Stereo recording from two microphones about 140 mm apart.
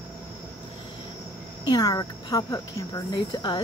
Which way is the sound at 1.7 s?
25° left (ahead or behind).